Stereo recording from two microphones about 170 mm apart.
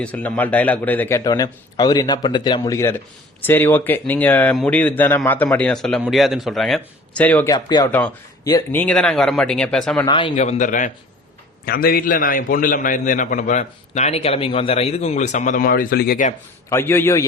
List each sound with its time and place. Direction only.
0.0 s speech: 10° left (ahead or behind)
7.5 s speech: 25° left (ahead or behind)
7.9 s speech: 10° left (ahead or behind)
8.8 s speech: 5° left (ahead or behind)
10.1 s speech: 30° left (ahead or behind)
10.3 s a man's voice: 45° left (ahead or behind)
11.6 s a man's voice: 60° left (ahead or behind)
16.6 s speech: 15° left (ahead or behind)